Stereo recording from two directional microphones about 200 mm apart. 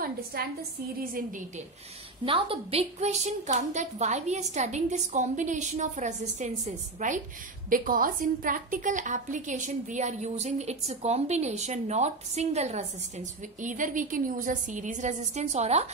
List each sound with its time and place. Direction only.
0.0 s a woman's voice: 50° right (ahead or behind)
2.2 s a woman's voice: 25° right (ahead or behind)